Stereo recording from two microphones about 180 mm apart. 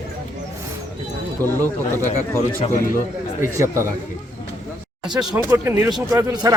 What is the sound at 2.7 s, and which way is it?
Speech, 50° left (ahead or behind).